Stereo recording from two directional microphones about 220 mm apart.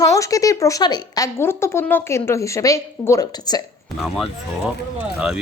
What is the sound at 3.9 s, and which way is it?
Speech, centre (ahead or behind).